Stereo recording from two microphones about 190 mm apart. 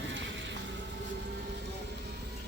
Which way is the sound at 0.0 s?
70° right (ahead or behind).